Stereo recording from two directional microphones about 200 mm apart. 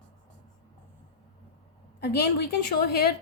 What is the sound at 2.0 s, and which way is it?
A woman's voice, 55° left (ahead or behind).